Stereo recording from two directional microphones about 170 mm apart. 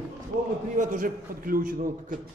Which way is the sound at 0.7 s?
50° right (ahead or behind).